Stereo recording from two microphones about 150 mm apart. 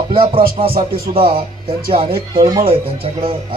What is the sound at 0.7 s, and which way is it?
Speech, 80° right.